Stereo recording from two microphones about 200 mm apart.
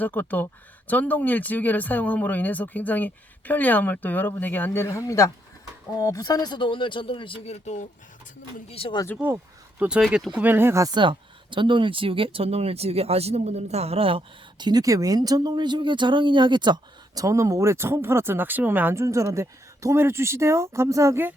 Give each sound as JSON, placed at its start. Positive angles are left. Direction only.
{"t": 0.0, "sound": "speech", "side_deg": 10}
{"t": 9.1, "sound": "speech", "side_deg": -10}